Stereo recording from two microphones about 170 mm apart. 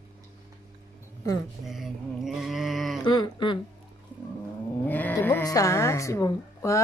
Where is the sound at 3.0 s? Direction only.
25° left (ahead or behind).